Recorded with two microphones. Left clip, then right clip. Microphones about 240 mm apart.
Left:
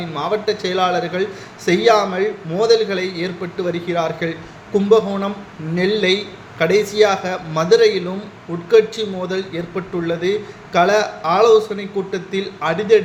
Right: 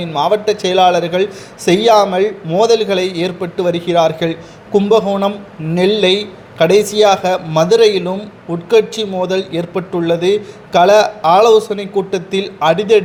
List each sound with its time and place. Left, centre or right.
0.0 s a man's voice: right